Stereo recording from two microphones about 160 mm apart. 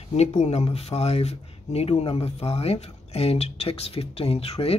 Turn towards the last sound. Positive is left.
turn(degrees=40)  # may be behind; listen again after turning